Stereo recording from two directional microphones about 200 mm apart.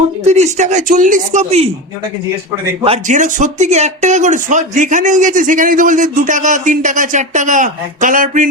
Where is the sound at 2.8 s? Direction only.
35° right (ahead or behind).